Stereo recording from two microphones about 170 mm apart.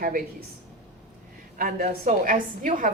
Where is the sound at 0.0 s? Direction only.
55° right (ahead or behind).